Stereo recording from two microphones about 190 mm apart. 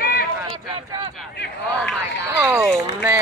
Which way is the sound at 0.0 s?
50° left (ahead or behind).